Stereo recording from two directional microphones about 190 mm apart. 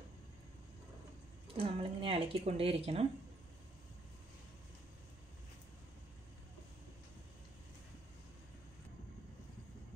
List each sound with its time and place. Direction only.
1.6 s speech: 30° right (ahead or behind)